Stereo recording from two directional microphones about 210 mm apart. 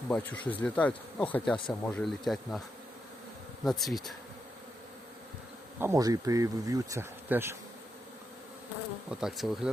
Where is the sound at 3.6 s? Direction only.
Centre (ahead or behind).